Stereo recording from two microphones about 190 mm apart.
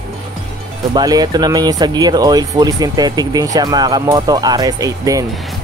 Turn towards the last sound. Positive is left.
turn(degrees=-20)  # may be behind; listen again after turning